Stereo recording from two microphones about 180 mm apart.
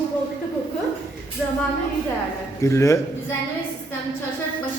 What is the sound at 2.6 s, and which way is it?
Speech, 15° left (ahead or behind).